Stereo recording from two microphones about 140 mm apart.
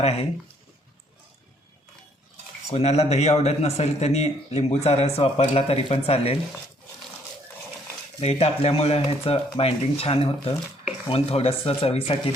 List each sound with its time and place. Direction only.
0.0 s speech: 50° left (ahead or behind)
2.6 s speech: 50° left (ahead or behind)
8.2 s speech: 45° left (ahead or behind)